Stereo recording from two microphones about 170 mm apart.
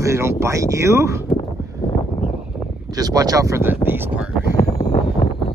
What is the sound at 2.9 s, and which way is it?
Speech, 20° right (ahead or behind).